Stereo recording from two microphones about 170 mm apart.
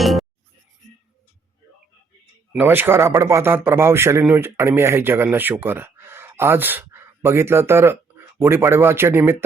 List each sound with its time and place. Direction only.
0.0 s music: centre (ahead or behind)
2.5 s speech: 10° right (ahead or behind)